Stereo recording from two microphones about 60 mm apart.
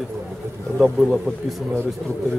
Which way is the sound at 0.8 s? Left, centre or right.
Centre.